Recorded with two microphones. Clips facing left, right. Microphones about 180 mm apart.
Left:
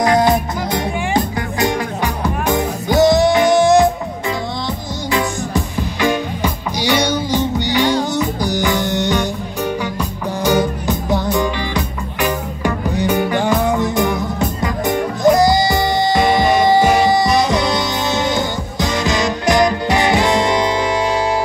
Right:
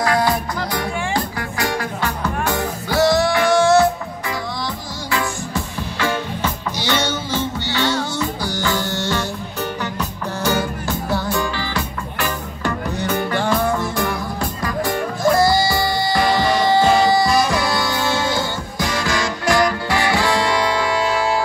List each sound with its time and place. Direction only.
0.0 s music: 20° left (ahead or behind)
5.1 s music: 15° left (ahead or behind)